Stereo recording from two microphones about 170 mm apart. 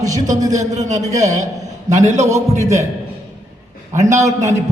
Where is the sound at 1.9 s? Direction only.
45° right (ahead or behind).